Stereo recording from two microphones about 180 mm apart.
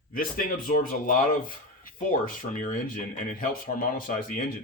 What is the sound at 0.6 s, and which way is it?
Speech, 50° left (ahead or behind).